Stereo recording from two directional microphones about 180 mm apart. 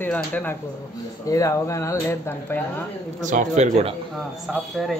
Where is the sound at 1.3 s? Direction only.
15° left (ahead or behind).